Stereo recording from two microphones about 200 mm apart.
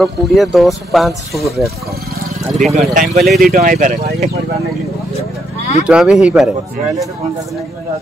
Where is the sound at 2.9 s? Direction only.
40° right (ahead or behind).